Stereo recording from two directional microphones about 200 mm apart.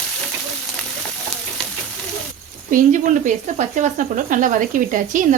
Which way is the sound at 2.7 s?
40° right (ahead or behind).